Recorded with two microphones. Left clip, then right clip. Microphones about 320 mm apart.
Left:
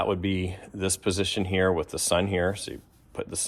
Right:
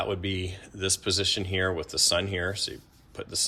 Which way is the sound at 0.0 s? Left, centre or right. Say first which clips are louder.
Left 3 dB; left.